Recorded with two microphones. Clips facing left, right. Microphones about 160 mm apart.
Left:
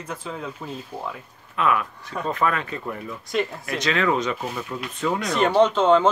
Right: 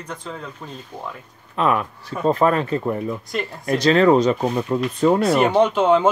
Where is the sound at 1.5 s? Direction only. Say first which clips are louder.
Right 3 dB; 35° right (ahead or behind).